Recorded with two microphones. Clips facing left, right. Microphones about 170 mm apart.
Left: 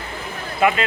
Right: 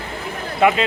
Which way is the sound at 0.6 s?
20° right (ahead or behind).